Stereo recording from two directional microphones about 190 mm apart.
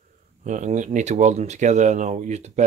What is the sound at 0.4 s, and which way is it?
Speech, 40° right (ahead or behind).